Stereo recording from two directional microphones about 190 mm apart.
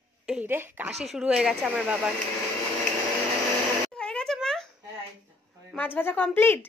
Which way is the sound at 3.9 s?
5° left (ahead or behind).